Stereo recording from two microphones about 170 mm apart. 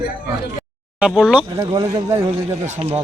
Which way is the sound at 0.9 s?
5° right (ahead or behind).